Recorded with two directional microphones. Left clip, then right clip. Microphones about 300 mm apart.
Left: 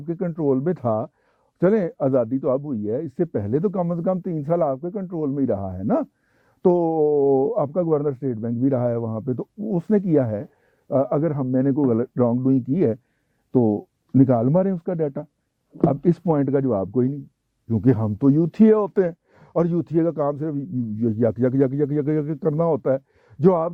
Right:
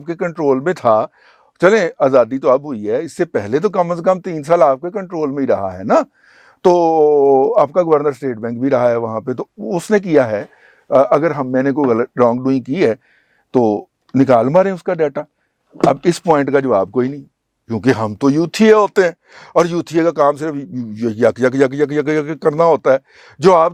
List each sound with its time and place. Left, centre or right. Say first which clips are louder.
0.0 s speech: right 7 dB; centre
13.5 s speech: right 6 dB; right
14.1 s speech: right 8 dB; centre